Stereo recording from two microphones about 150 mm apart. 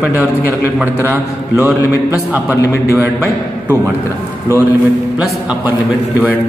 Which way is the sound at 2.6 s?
20° left (ahead or behind).